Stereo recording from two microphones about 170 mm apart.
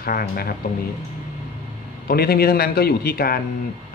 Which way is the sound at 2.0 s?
65° left (ahead or behind).